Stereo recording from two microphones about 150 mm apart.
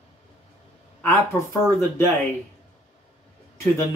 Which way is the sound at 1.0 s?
15° left (ahead or behind).